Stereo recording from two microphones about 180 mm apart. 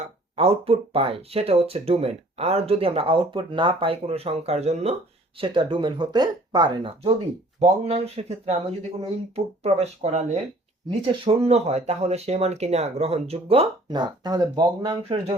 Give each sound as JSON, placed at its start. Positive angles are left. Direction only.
{"t": 0.0, "sound": "speech", "side_deg": -35}